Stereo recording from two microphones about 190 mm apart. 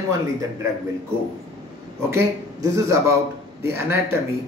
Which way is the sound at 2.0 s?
15° right (ahead or behind).